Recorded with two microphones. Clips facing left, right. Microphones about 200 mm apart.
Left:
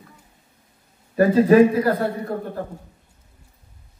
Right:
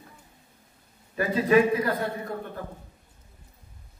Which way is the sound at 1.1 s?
40° left (ahead or behind).